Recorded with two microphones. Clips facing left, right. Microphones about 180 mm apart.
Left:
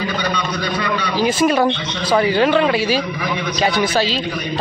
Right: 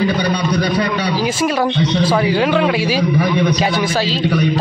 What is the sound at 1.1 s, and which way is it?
Speech, 5° right (ahead or behind).